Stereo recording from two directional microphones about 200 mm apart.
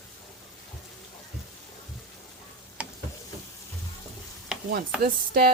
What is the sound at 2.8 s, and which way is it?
Stir, 5° right (ahead or behind).